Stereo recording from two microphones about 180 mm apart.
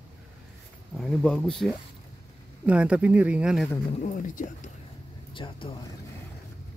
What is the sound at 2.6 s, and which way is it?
Speech, 5° right (ahead or behind).